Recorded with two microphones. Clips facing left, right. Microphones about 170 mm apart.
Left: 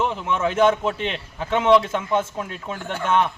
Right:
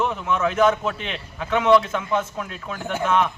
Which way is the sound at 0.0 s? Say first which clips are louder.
Even; 30° left (ahead or behind).